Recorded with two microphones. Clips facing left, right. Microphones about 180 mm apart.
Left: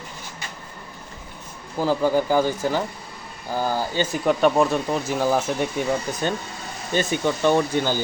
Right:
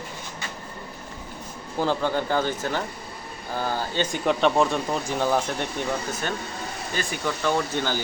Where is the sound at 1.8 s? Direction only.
5° left (ahead or behind).